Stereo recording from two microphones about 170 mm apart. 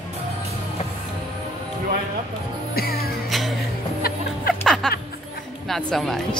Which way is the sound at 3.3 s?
Centre (ahead or behind).